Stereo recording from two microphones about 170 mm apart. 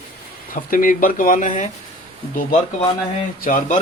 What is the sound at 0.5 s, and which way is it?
Speech, 55° left (ahead or behind).